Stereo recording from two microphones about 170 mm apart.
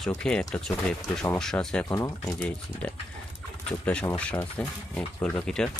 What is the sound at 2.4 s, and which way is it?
Speech, 5° left (ahead or behind).